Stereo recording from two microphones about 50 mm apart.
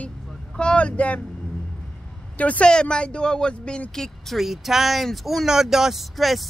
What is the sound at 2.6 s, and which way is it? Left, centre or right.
Speech, centre.